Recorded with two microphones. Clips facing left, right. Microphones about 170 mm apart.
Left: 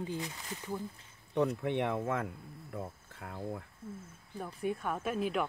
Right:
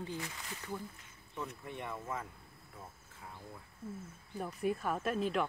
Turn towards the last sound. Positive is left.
turn(degrees=5)  # may be behind; listen again after turning